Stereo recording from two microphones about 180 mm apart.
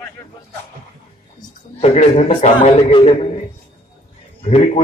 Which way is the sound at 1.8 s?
35° left (ahead or behind).